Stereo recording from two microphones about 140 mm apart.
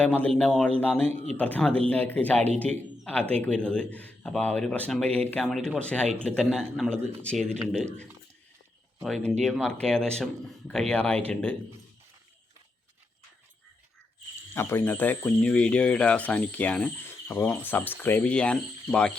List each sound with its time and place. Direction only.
0.0 s speech: 10° left (ahead or behind)
1.1 s speech: 55° right (ahead or behind)
1.4 s speech: 10° left (ahead or behind)
9.0 s speech: centre (ahead or behind)
14.5 s speech: 15° left (ahead or behind)